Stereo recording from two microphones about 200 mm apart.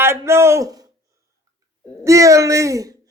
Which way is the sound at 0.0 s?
15° right (ahead or behind).